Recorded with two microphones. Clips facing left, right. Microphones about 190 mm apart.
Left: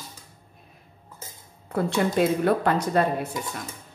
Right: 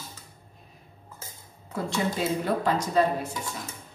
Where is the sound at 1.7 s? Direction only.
60° left (ahead or behind).